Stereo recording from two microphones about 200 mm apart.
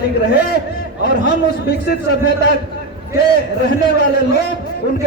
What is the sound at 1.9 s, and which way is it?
Speech, 55° left (ahead or behind).